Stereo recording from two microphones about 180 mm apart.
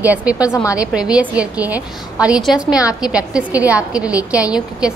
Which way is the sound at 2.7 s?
20° left (ahead or behind).